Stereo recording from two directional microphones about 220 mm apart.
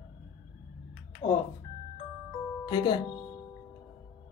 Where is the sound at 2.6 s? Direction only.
20° left (ahead or behind).